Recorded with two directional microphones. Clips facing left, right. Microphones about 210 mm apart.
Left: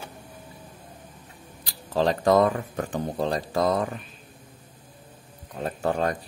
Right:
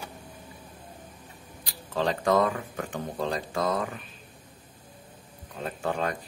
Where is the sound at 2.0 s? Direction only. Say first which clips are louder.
Left 4 dB; 35° left (ahead or behind).